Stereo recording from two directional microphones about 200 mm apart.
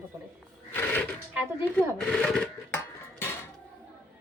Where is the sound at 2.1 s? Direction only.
5° left (ahead or behind).